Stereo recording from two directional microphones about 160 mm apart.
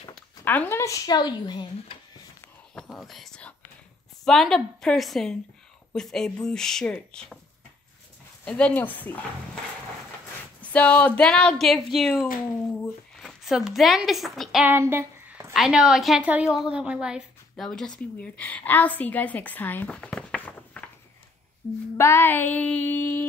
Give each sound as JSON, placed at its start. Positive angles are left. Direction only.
{"t": 0.1, "sound": "speech", "side_deg": 10}
{"t": 2.7, "sound": "speech", "side_deg": 0}
{"t": 8.5, "sound": "a woman's voice", "side_deg": 5}
{"t": 10.6, "sound": "a woman's voice", "side_deg": 10}
{"t": 14.6, "sound": "a sound", "side_deg": -15}
{"t": 15.5, "sound": "a woman's voice", "side_deg": -5}
{"t": 21.9, "sound": "a woman's voice", "side_deg": 15}